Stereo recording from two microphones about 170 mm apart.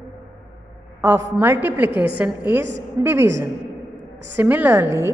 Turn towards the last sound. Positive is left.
turn(degrees=-15)  # may be behind; listen again after turning